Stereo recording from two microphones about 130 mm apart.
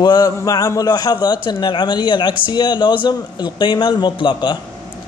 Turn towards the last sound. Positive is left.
turn(degrees=35)  # may be behind; listen again after turning